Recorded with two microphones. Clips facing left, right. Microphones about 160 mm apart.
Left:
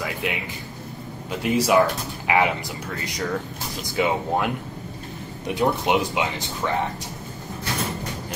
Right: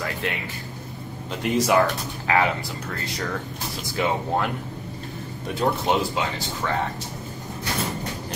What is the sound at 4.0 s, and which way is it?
Speech, 15° left (ahead or behind).